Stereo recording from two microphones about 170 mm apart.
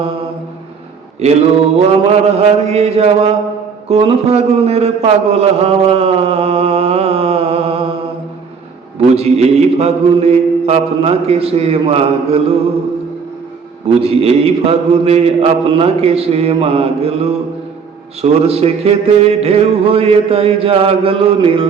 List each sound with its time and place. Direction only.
1.2 s mantra: 40° right (ahead or behind)
3.8 s a man's voice: 35° right (ahead or behind)
9.0 s mantra: 35° right (ahead or behind)
13.8 s mantra: 35° right (ahead or behind)